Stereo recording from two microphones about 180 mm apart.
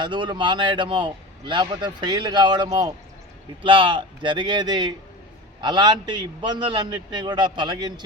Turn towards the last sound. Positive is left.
turn(degrees=-25)  # may be behind; listen again after turning